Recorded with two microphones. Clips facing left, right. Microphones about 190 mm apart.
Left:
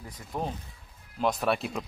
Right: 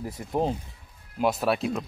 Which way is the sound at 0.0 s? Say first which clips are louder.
Right 7 dB; 25° right (ahead or behind).